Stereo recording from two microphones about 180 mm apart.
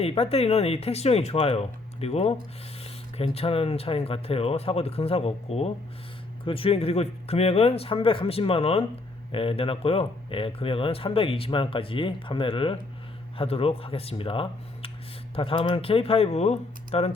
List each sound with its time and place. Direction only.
0.0 s speech: 35° left (ahead or behind)